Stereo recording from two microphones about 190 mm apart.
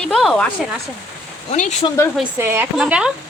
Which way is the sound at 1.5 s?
40° left (ahead or behind).